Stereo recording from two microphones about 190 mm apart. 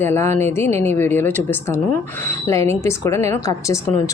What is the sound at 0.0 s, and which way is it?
A woman's voice, 10° left (ahead or behind).